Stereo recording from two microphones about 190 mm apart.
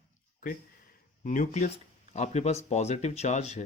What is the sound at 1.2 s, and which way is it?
Speech, 45° left (ahead or behind).